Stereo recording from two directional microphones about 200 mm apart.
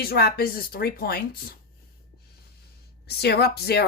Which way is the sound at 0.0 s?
50° left (ahead or behind).